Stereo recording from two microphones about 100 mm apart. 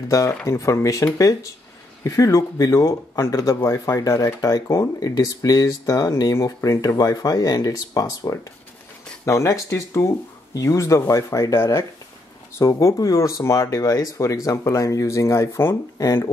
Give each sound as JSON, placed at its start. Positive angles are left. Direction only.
{"t": 0.1, "sound": "speech", "side_deg": 35}